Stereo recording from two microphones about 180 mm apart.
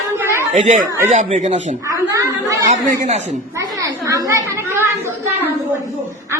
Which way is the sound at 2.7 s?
40° right (ahead or behind).